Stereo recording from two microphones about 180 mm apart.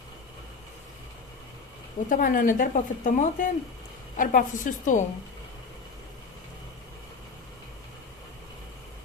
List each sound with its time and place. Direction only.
2.0 s speech: 50° left (ahead or behind)